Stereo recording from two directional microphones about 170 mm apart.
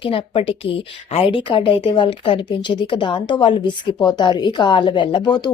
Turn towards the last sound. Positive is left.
turn(degrees=25)  # may be behind; listen again after turning